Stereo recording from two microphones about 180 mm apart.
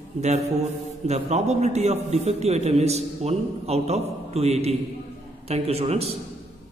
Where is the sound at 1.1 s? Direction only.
40° right (ahead or behind).